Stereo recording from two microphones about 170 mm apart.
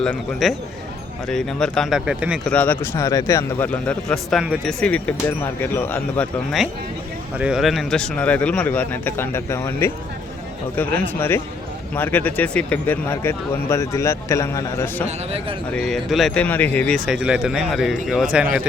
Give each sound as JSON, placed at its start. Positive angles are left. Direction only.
{"t": 0.0, "sound": "speech", "side_deg": 5}
{"t": 2.5, "sound": "speech", "side_deg": 10}
{"t": 7.3, "sound": "speech", "side_deg": -5}
{"t": 15.0, "sound": "a man's voice", "side_deg": -40}
{"t": 15.7, "sound": "speech", "side_deg": 0}
{"t": 17.1, "sound": "speech", "side_deg": -5}